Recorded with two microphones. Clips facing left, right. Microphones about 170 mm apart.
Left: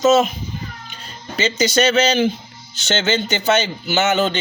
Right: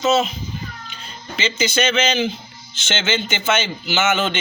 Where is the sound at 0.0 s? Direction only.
45° left (ahead or behind).